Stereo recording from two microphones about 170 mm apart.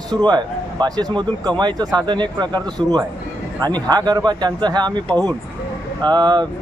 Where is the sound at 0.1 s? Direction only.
25° right (ahead or behind).